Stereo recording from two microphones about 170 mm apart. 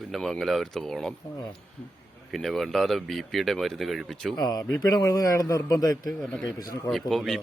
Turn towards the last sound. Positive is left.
turn(degrees=0)  # may be behind; listen again after turning